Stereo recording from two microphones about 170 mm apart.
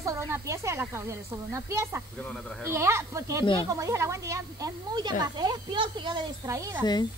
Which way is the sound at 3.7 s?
15° right (ahead or behind).